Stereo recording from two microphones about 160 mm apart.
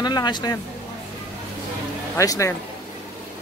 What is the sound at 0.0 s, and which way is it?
Speech, 25° left (ahead or behind).